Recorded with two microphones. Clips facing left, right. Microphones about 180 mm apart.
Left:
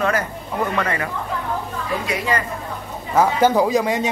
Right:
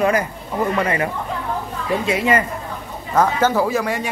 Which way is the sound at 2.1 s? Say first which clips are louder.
Right 6 dB; 25° right (ahead or behind).